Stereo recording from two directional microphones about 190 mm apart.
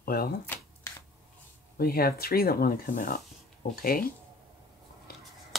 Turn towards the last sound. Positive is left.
turn(degrees=55)  # may be behind; listen again after turning